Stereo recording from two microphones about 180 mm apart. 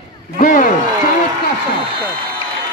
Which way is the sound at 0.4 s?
45° left (ahead or behind).